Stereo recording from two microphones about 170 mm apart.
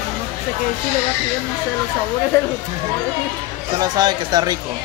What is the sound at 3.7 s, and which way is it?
Speech, 25° right (ahead or behind).